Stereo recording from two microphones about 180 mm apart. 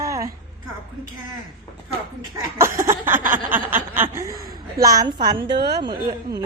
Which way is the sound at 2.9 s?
15° right (ahead or behind).